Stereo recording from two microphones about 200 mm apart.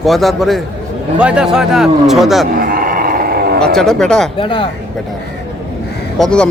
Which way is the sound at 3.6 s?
Centre (ahead or behind).